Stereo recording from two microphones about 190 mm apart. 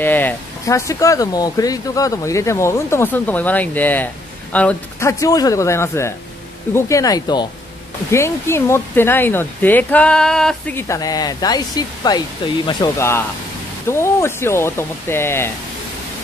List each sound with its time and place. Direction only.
0.0 s speech: 10° left (ahead or behind)
5.2 s speech: 20° left (ahead or behind)